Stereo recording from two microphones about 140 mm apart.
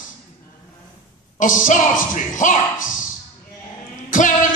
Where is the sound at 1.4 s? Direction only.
65° left (ahead or behind).